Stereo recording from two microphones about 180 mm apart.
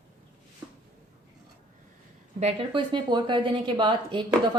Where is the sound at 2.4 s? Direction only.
30° right (ahead or behind).